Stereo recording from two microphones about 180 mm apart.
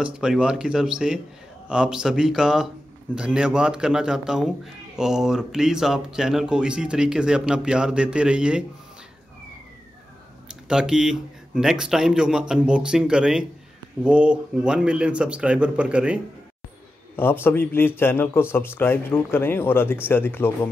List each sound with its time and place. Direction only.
0.0 s a man's voice: 5° right (ahead or behind)
10.5 s a man's voice: 5° right (ahead or behind)
17.1 s a man's voice: 10° left (ahead or behind)